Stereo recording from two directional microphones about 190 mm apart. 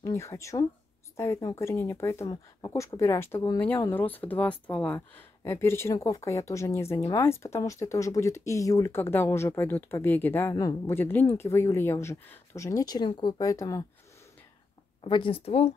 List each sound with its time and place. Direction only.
0.0 s speech: 15° left (ahead or behind)
15.0 s a woman's voice: 25° left (ahead or behind)